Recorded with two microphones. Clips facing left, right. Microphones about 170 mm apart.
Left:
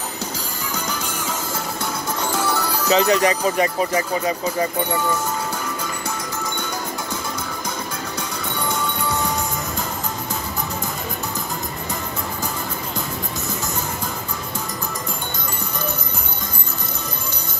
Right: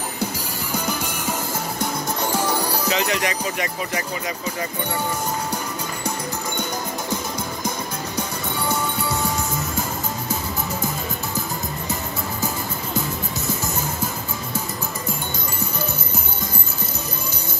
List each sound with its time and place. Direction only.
0.7 s music: 10° right (ahead or behind)
2.3 s music: 10° right (ahead or behind)
2.9 s speech: 35° left (ahead or behind)